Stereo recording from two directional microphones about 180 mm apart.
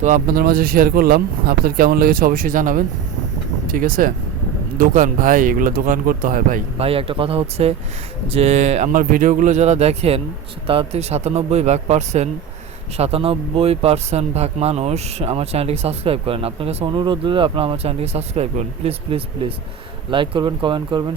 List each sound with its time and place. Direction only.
0.0 s speech: 50° right (ahead or behind)
6.7 s speech: 30° right (ahead or behind)